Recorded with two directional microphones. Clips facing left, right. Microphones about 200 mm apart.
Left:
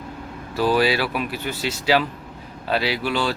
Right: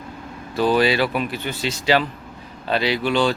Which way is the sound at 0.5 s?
5° left (ahead or behind).